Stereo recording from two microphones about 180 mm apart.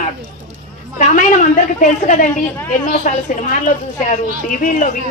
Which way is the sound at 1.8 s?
50° left (ahead or behind).